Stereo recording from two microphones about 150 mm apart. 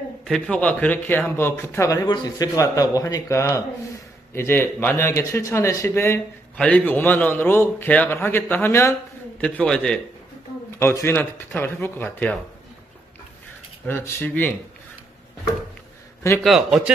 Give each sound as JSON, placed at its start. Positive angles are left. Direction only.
{"t": 0.2, "sound": "speech", "side_deg": 5}
{"t": 9.4, "sound": "speech", "side_deg": 5}
{"t": 13.8, "sound": "speech", "side_deg": 15}
{"t": 16.4, "sound": "a man's voice", "side_deg": 0}